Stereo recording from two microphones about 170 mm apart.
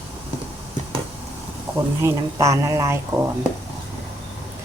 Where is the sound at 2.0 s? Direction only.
20° right (ahead or behind).